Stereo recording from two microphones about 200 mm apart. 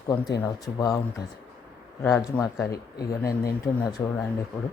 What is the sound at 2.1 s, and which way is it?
Speech, 15° left (ahead or behind).